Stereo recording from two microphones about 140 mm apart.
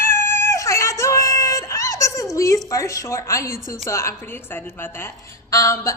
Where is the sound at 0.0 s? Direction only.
15° left (ahead or behind).